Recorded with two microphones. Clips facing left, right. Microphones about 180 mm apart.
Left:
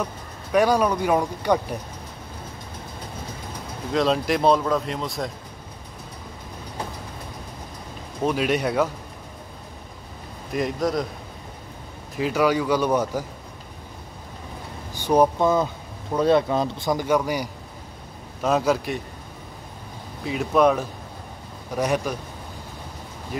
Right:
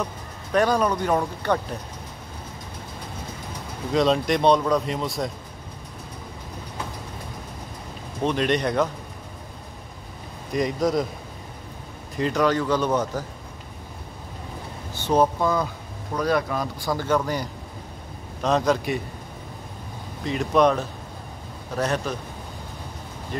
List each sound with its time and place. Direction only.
0.0 s speech: 10° left (ahead or behind)
3.9 s speech: centre (ahead or behind)
8.2 s speech: 5° left (ahead or behind)
10.5 s speech: centre (ahead or behind)
12.2 s speech: 5° left (ahead or behind)
15.0 s speech: 15° left (ahead or behind)
20.2 s speech: 5° left (ahead or behind)